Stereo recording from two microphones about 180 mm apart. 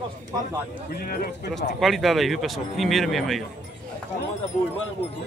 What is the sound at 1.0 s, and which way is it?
Speech, 55° left (ahead or behind).